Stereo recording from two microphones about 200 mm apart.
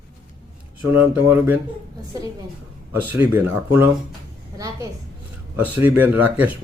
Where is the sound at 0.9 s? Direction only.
10° right (ahead or behind).